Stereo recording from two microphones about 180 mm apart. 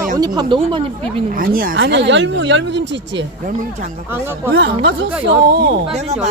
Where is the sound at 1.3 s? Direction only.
55° right (ahead or behind).